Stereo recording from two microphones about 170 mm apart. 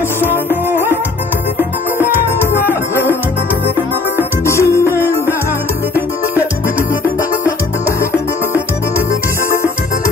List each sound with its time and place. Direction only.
1.6 s music: 10° right (ahead or behind)
2.5 s music: 15° left (ahead or behind)
4.5 s music: 15° left (ahead or behind)